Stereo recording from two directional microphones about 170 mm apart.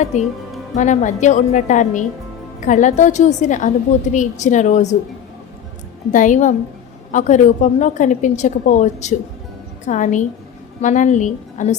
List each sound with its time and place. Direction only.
0.0 s a woman's voice: 40° left (ahead or behind)
6.1 s a woman's voice: 45° left (ahead or behind)